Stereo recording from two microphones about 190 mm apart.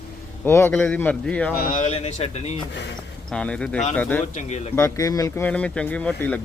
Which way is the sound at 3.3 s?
5° left (ahead or behind).